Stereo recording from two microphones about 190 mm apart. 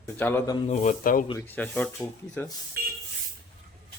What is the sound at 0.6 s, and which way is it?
Speech, 40° left (ahead or behind).